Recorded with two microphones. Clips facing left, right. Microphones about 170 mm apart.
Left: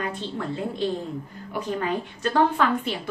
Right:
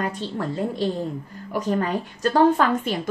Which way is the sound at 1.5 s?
45° right (ahead or behind).